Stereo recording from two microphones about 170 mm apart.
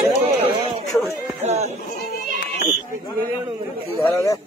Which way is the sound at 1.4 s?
40° right (ahead or behind).